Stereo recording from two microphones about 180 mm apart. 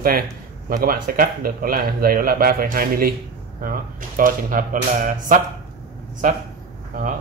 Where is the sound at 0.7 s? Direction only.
55° right (ahead or behind).